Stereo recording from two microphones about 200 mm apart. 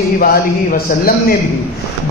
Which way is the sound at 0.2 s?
45° left (ahead or behind).